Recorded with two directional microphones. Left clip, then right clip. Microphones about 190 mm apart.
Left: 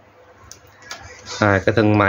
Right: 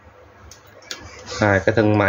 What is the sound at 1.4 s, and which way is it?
Speech, 20° left (ahead or behind).